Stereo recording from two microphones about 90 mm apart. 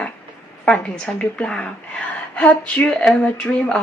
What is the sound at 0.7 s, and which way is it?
A woman's voice, 15° left (ahead or behind).